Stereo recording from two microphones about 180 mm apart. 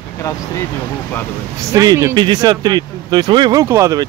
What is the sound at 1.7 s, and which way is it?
Speech, 20° right (ahead or behind).